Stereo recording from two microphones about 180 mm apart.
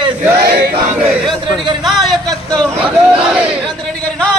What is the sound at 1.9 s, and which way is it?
A man's voice, centre (ahead or behind).